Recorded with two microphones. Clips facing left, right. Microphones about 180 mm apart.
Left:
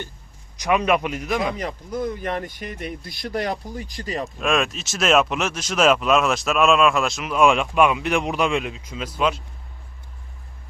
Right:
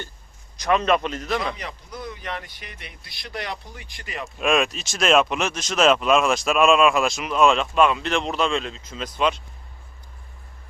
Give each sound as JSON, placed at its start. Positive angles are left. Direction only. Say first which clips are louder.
{"t": 0.5, "sound": "a man's voice", "louder": "even", "side_deg": 15}
{"t": 1.5, "sound": "speech", "louder": "left 8 dB", "side_deg": 45}
{"t": 4.4, "sound": "speech", "louder": "right 2 dB", "side_deg": 0}